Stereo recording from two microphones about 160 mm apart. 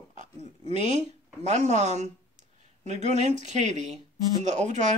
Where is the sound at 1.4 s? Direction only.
45° right (ahead or behind).